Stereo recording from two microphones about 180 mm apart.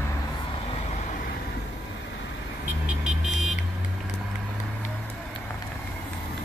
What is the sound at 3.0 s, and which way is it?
Vehicle, centre (ahead or behind).